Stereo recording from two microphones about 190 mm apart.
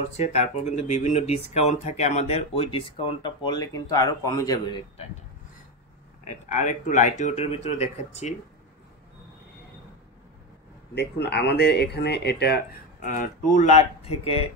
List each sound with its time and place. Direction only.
0.2 s speech: 35° left (ahead or behind)
6.2 s speech: 40° left (ahead or behind)
11.0 s speech: 60° left (ahead or behind)
13.0 s speech: 45° left (ahead or behind)